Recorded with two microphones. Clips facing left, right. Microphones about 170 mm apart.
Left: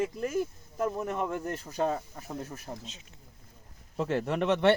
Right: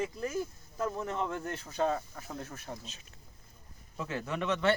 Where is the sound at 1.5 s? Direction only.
40° left (ahead or behind).